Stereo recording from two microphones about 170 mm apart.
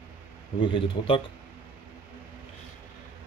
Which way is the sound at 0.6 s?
30° left (ahead or behind).